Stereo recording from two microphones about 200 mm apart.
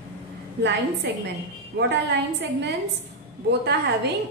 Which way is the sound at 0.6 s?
55° right (ahead or behind).